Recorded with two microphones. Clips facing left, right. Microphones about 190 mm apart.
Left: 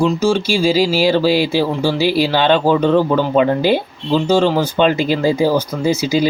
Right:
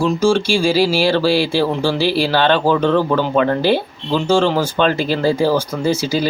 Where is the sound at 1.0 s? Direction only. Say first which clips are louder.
Left 1 dB; 15° left (ahead or behind).